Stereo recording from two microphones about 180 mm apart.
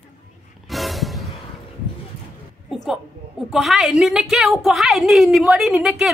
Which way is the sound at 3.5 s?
Centre (ahead or behind).